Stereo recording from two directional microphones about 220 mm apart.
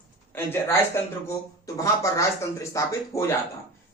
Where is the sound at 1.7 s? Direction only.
15° left (ahead or behind).